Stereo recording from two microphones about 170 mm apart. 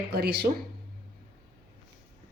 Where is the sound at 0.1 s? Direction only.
70° right (ahead or behind).